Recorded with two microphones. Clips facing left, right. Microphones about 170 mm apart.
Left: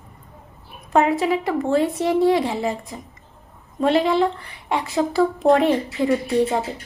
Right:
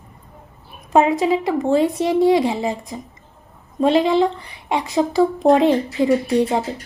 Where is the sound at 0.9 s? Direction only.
20° right (ahead or behind).